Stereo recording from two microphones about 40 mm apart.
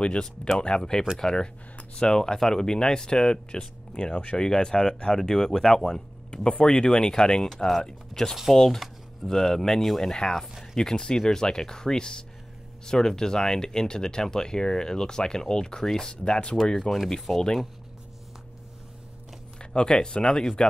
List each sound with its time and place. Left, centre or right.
0.0 s speech: left
16.7 s speech: centre
19.6 s speech: left